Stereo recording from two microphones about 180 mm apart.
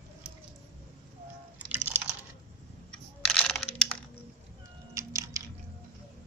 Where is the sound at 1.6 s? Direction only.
10° right (ahead or behind).